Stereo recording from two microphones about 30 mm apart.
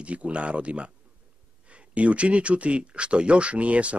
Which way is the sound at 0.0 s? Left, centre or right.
Right.